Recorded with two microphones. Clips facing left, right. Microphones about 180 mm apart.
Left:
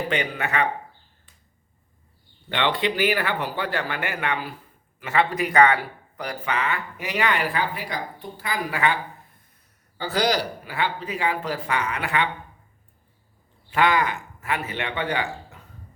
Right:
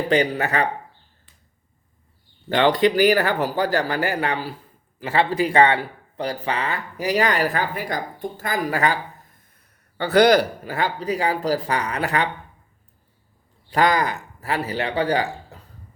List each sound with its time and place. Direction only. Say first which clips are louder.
0.1 s speech: right 6 dB; 35° right (ahead or behind)
2.5 s speech: right 7 dB; 40° right (ahead or behind)
10.0 s speech: right 8 dB; 60° right (ahead or behind); by 12.3 s 40° right (ahead or behind)
13.7 s speech: right 2 dB; 40° right (ahead or behind)